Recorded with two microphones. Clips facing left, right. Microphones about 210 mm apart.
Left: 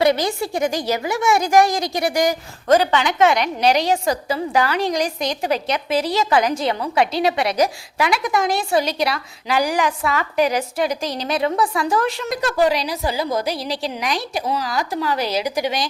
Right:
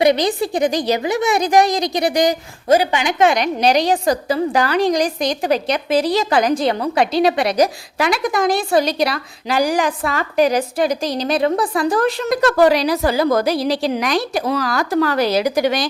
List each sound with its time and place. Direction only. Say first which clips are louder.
0.0 s a woman's voice: right 3 dB; 15° right (ahead or behind)
3.9 s a woman's voice: right 4 dB; 35° right (ahead or behind)
4.9 s a woman's voice: right 3 dB; 15° right (ahead or behind)
5.4 s a woman's voice: right 3 dB; 35° right (ahead or behind)
12.3 s a woman's voice: right 5 dB; 65° right (ahead or behind)
13.7 s speech: right 6 dB; 55° right (ahead or behind)